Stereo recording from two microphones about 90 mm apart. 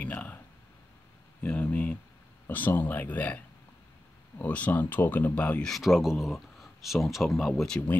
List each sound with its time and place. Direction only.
0.0 s speech: 15° left (ahead or behind)
1.4 s speech: 15° left (ahead or behind)
5.7 s speech: centre (ahead or behind)